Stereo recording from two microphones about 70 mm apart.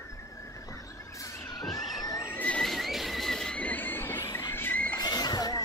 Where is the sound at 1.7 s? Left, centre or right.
Left.